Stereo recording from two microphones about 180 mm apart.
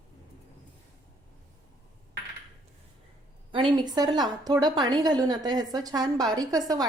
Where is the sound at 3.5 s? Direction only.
25° right (ahead or behind).